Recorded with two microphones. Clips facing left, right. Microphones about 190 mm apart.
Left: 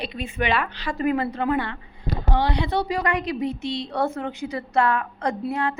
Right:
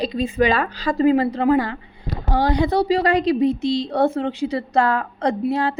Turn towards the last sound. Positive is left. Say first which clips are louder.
# right 5 dB
turn(degrees=-35)  # may be behind; listen again after turning